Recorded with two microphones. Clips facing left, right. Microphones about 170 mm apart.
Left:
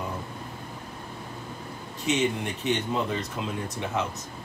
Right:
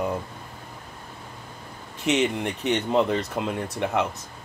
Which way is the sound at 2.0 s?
65° right (ahead or behind).